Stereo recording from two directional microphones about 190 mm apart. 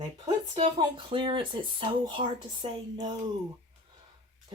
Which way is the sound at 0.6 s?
30° right (ahead or behind).